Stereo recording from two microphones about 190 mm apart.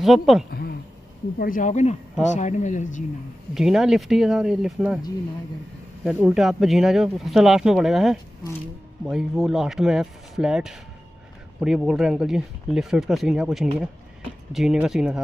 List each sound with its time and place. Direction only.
0.0 s speech: centre (ahead or behind)
0.5 s a sound: 55° left (ahead or behind)
1.4 s speech: 45° left (ahead or behind)
3.5 s speech: centre (ahead or behind)
6.2 s speech: centre (ahead or behind)